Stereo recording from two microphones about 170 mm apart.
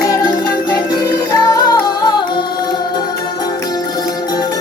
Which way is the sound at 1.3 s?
20° left (ahead or behind).